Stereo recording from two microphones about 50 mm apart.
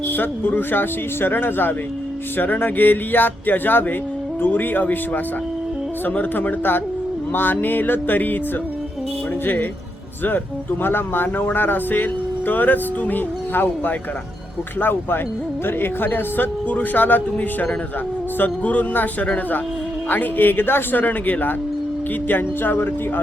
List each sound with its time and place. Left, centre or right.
0.1 s speech: left
10.2 s speech: left